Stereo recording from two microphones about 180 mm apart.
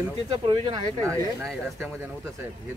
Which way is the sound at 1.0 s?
5° left (ahead or behind).